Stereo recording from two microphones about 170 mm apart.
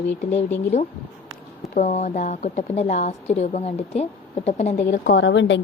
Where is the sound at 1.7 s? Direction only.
45° left (ahead or behind).